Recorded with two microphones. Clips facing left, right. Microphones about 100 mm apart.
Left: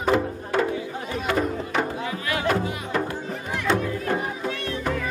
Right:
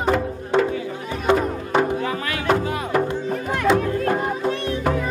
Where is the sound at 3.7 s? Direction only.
50° right (ahead or behind).